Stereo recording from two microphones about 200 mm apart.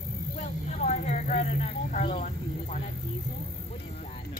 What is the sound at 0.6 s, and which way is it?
Vehicle, 35° left (ahead or behind).